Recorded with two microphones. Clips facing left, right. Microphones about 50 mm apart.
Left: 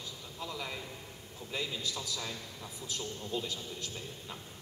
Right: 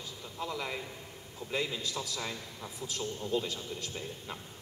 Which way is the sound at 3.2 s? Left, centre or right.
Right.